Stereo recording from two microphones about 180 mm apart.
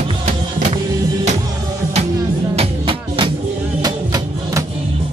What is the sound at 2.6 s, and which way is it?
Music, 30° right (ahead or behind).